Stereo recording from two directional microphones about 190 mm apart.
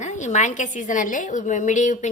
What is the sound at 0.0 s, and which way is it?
A woman's voice, 40° left (ahead or behind).